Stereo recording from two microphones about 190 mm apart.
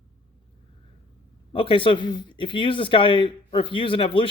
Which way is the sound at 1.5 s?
25° left (ahead or behind).